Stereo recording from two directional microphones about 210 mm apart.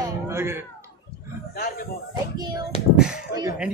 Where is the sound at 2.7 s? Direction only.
30° left (ahead or behind).